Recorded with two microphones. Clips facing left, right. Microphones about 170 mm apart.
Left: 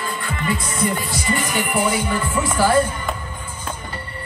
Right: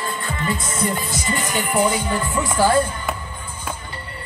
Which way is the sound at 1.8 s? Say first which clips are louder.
Even; 15° right (ahead or behind).